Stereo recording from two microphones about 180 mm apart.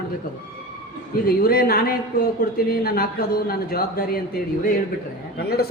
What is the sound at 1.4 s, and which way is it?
A man's voice, 55° left (ahead or behind).